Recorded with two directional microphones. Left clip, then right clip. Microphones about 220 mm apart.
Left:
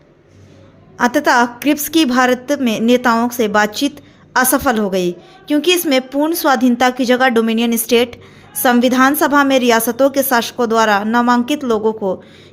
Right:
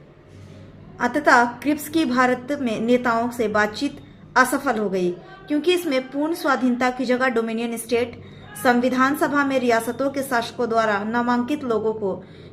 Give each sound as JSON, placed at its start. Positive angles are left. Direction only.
{"t": 0.9, "sound": "a woman's voice", "side_deg": 45}